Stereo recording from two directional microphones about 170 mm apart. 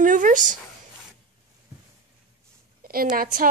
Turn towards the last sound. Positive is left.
turn(degrees=-60)  # may be behind; listen again after turning